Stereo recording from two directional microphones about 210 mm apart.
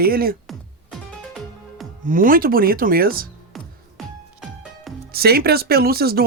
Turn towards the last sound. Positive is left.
turn(degrees=-45)  # may be behind; listen again after turning